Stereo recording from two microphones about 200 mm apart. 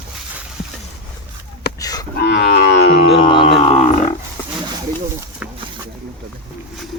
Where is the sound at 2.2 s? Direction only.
60° left (ahead or behind).